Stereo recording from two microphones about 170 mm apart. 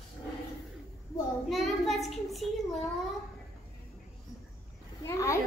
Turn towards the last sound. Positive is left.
turn(degrees=15)  # may be behind; listen again after turning